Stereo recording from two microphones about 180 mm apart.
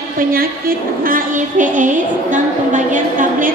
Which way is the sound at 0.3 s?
55° right (ahead or behind).